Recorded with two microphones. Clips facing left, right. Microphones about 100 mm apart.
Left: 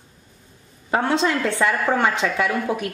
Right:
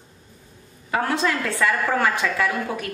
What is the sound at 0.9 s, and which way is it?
A woman's voice, 25° left (ahead or behind).